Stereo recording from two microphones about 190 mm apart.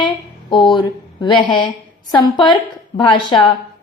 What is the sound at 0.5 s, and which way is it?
A woman's voice, 20° left (ahead or behind).